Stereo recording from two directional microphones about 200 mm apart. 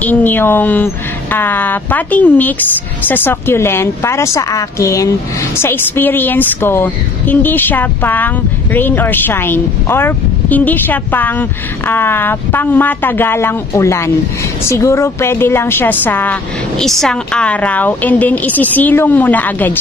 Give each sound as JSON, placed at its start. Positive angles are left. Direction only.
{"t": 0.0, "sound": "a woman's voice", "side_deg": 10}